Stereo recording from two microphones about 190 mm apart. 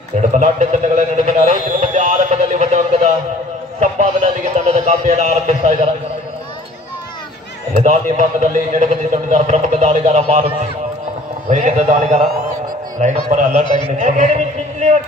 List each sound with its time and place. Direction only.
0.3 s a man's voice: 40° right (ahead or behind)
3.8 s a sound: 40° right (ahead or behind)
7.8 s a man's voice: 40° right (ahead or behind)